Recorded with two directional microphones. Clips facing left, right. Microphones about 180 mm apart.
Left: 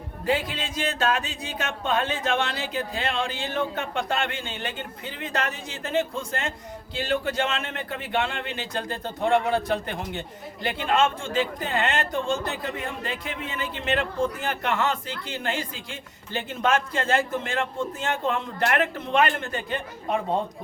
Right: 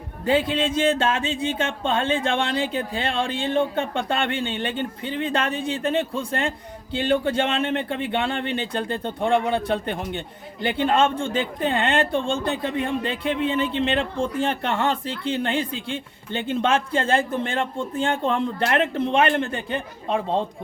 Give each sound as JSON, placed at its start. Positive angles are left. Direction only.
{"t": 0.3, "sound": "speech", "side_deg": -30}